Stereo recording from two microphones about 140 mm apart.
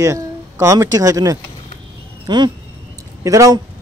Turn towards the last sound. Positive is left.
turn(degrees=-25)  # may be behind; listen again after turning